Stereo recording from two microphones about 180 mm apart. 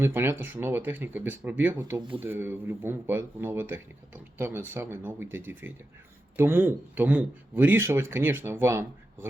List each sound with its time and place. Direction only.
0.0 s speech: 15° right (ahead or behind)
2.0 s speech: 30° right (ahead or behind)
2.2 s speech: 10° right (ahead or behind)